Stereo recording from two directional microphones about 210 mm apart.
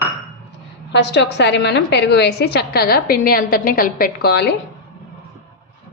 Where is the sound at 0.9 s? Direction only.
55° left (ahead or behind).